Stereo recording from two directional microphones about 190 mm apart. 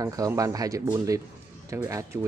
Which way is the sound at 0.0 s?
20° right (ahead or behind).